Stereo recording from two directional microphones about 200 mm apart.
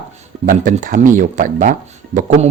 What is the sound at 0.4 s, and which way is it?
Speech, 40° right (ahead or behind).